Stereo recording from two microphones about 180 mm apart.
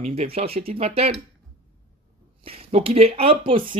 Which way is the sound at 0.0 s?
35° right (ahead or behind).